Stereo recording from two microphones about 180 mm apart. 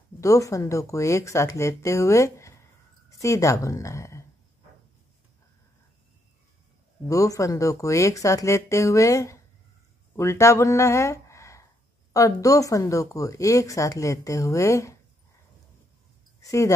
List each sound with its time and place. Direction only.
0.2 s speech: 20° left (ahead or behind)
7.1 s speech: 20° left (ahead or behind)
16.3 s speech: 15° left (ahead or behind)